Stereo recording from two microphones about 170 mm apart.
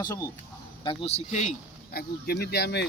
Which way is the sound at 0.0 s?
20° left (ahead or behind).